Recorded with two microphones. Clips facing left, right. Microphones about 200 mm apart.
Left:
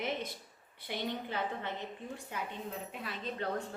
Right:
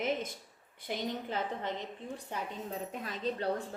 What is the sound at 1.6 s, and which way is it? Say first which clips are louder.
Speech: right 3 dB; 90° right.